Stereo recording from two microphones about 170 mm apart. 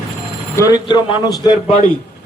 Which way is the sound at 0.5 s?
20° left (ahead or behind).